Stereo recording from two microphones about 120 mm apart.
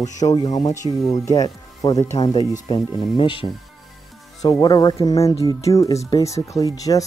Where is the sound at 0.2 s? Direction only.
30° left (ahead or behind).